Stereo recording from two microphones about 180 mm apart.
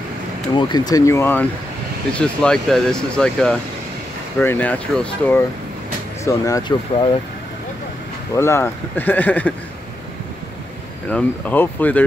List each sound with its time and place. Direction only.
0.6 s speech: 25° left (ahead or behind); by 5.4 s 10° left (ahead or behind)
6.2 s speech: 20° left (ahead or behind)
8.4 s speech: 15° left (ahead or behind)
11.1 s speech: 5° left (ahead or behind)